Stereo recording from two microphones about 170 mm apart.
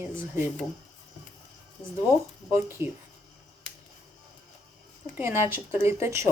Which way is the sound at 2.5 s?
15° right (ahead or behind).